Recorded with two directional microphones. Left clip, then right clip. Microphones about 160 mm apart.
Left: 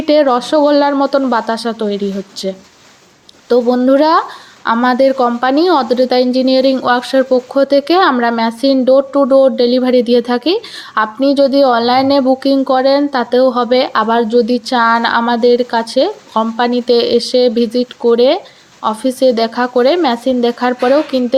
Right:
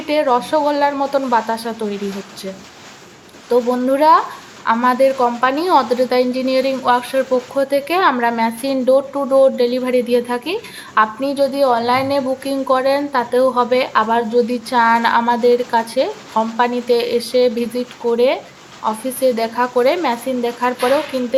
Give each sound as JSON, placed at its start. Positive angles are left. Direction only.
{"t": 0.1, "sound": "a woman's voice", "side_deg": 30}
{"t": 3.5, "sound": "a woman's voice", "side_deg": 25}